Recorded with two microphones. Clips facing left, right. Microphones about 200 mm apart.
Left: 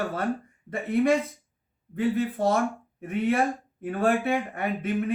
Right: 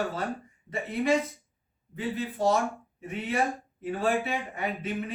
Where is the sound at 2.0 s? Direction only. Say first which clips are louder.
Left 5 dB; 55° left (ahead or behind).